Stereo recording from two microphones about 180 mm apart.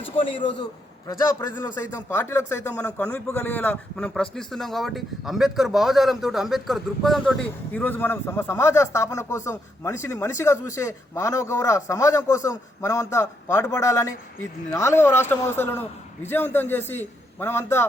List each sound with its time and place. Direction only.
0.2 s a man's voice: 30° left (ahead or behind)
1.4 s a man's voice: 10° left (ahead or behind)